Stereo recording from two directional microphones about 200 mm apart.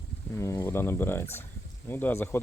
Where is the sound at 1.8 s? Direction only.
10° left (ahead or behind).